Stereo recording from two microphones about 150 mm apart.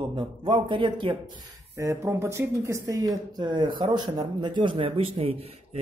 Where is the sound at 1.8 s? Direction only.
20° right (ahead or behind).